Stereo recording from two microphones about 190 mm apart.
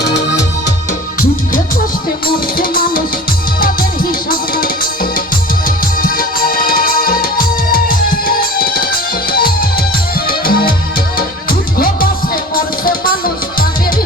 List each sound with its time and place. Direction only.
0.0 s music: 65° left (ahead or behind)
2.2 s music: 50° left (ahead or behind)